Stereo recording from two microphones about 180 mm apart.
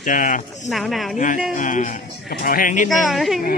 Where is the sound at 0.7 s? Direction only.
Centre (ahead or behind).